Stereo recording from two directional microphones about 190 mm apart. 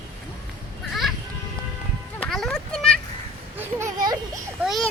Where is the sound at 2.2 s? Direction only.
Centre (ahead or behind).